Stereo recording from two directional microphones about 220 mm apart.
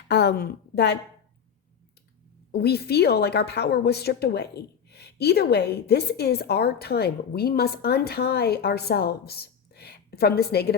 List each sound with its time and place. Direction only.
0.1 s a woman's voice: 50° left (ahead or behind)
2.5 s a woman's voice: 45° left (ahead or behind)